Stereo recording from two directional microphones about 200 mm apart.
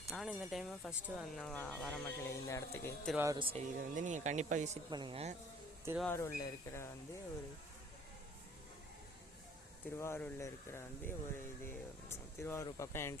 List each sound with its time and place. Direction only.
0.1 s speech: centre (ahead or behind)
2.2 s speech: 15° left (ahead or behind)
3.2 s speech: 15° right (ahead or behind)
3.4 s speech: 35° right (ahead or behind)
4.9 s speech: 25° right (ahead or behind)
6.0 s speech: 10° left (ahead or behind)
10.0 s speech: 10° left (ahead or behind)